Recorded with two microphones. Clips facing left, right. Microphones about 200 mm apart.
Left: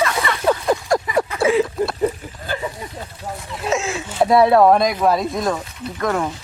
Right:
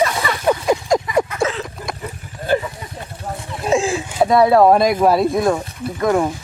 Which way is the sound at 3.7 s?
30° right (ahead or behind).